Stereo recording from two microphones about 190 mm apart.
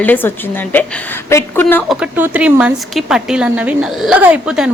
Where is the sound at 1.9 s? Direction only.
5° right (ahead or behind).